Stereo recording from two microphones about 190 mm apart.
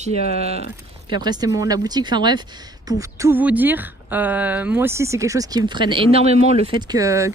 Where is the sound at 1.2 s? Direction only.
20° right (ahead or behind).